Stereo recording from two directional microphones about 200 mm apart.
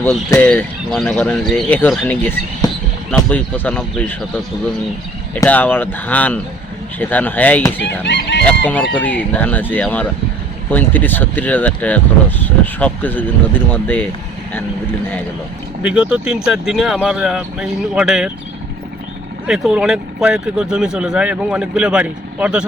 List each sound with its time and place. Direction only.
0.0 s speech: 10° left (ahead or behind)
5.3 s speech: 10° left (ahead or behind)
7.9 s fowl: 60° left (ahead or behind)
8.4 s speech: 10° left (ahead or behind)
15.8 s speech: 5° right (ahead or behind)
19.5 s speech: centre (ahead or behind)